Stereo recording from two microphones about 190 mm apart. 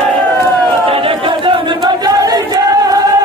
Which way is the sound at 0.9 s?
30° right (ahead or behind).